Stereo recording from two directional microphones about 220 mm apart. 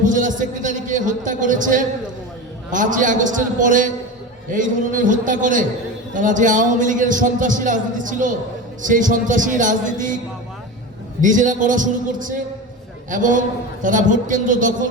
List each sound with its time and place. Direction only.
0.0 s a man's voice: 35° right (ahead or behind)
11.2 s a man's voice: 35° right (ahead or behind)